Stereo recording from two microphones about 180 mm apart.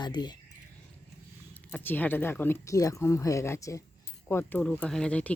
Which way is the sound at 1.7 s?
10° left (ahead or behind).